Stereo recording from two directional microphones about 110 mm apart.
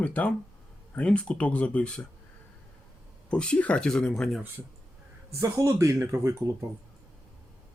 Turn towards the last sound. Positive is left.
turn(degrees=-25)  # may be behind; listen again after turning